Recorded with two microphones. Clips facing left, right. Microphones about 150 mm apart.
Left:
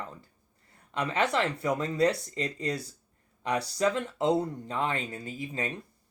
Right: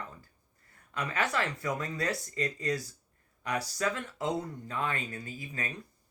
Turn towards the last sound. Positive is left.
turn(degrees=25)  # may be behind; listen again after turning